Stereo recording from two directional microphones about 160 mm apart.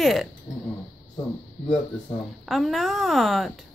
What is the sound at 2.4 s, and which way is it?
Speech, centre (ahead or behind).